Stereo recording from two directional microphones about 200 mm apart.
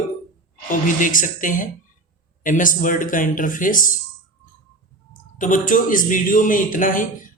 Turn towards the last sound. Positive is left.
turn(degrees=40)  # may be behind; listen again after turning